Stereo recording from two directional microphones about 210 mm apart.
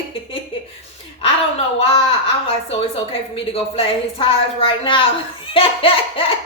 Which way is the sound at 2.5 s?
25° left (ahead or behind).